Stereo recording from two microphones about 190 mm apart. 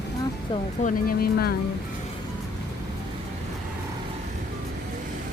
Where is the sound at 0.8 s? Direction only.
45° left (ahead or behind).